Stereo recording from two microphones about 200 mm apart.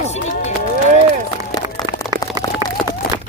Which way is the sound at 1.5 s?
20° left (ahead or behind).